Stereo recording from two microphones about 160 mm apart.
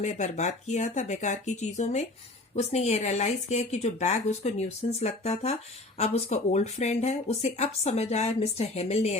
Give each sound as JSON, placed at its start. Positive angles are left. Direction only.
{"t": 0.0, "sound": "speech", "side_deg": 50}